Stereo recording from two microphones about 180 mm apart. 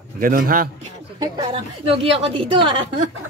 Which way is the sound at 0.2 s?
50° right (ahead or behind).